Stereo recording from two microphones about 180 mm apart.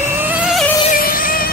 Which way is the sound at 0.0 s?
10° right (ahead or behind).